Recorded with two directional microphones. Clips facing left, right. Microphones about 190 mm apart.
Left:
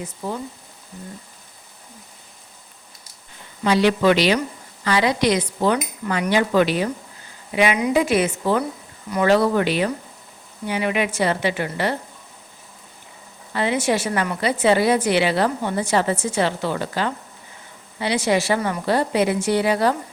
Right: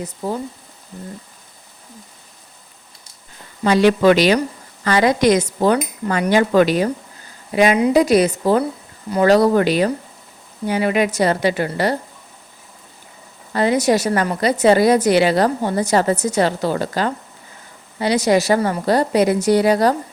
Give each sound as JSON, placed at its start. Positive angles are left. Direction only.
{"t": 3.6, "sound": "a woman's voice", "side_deg": -45}
{"t": 13.5, "sound": "a woman's voice", "side_deg": -40}